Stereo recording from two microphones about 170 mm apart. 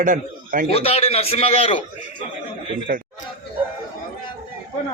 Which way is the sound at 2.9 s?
55° right (ahead or behind).